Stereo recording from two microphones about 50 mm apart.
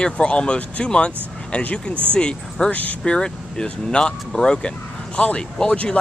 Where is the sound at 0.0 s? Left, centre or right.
Centre.